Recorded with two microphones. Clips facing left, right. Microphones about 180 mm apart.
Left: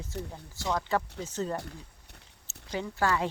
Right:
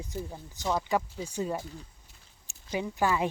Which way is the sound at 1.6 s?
65° left (ahead or behind).